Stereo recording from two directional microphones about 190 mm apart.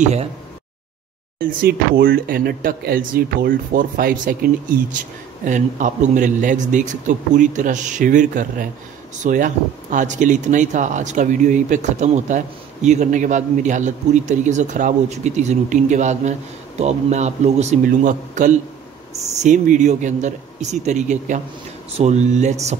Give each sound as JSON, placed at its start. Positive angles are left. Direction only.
{"t": 0.0, "sound": "speech", "side_deg": -35}
{"t": 1.4, "sound": "speech", "side_deg": -50}